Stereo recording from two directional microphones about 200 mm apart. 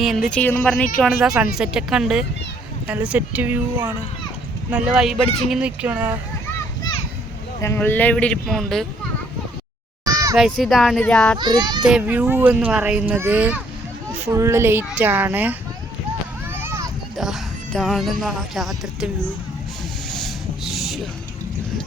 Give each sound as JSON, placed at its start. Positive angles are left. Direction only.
{"t": 0.0, "sound": "speech", "side_deg": 0}
{"t": 7.6, "sound": "speech", "side_deg": 10}
{"t": 10.1, "sound": "a sound", "side_deg": -20}
{"t": 10.3, "sound": "speech", "side_deg": 0}
{"t": 11.3, "sound": "a child's voice", "side_deg": -20}
{"t": 11.8, "sound": "speech", "side_deg": -5}
{"t": 16.5, "sound": "a sound", "side_deg": -10}
{"t": 17.2, "sound": "speech", "side_deg": 0}
{"t": 20.2, "sound": "vehicle", "side_deg": 0}